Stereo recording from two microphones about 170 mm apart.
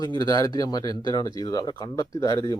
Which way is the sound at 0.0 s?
25° left (ahead or behind).